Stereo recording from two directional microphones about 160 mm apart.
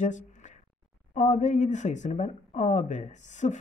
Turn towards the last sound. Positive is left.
turn(degrees=50)  # may be behind; listen again after turning